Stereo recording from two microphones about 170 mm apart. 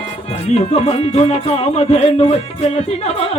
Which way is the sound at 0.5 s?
35° left (ahead or behind).